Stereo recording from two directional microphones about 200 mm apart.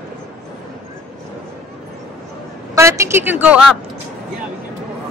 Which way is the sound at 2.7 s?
15° right (ahead or behind).